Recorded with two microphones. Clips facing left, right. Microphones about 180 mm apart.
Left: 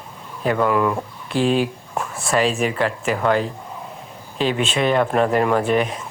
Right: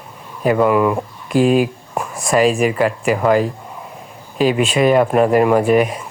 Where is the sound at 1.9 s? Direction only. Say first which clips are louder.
Right 3 dB; 15° right (ahead or behind).